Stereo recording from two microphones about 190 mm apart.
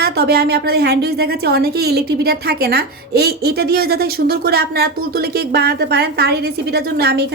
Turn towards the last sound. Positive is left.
turn(degrees=-55)  # may be behind; listen again after turning